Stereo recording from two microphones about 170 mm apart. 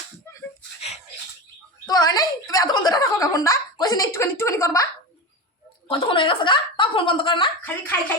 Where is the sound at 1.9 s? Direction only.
20° left (ahead or behind).